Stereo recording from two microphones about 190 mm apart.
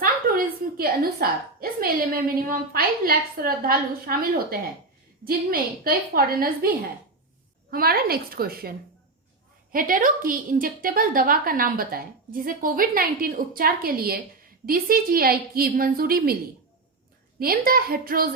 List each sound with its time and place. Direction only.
0.0 s a woman's voice: 50° right (ahead or behind)
9.7 s a woman's voice: 45° right (ahead or behind)
17.4 s a woman's voice: 50° right (ahead or behind)